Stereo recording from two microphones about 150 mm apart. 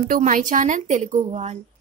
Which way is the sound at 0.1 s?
65° right (ahead or behind).